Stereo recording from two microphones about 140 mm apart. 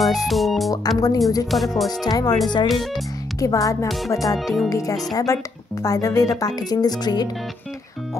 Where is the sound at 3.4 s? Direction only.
25° left (ahead or behind).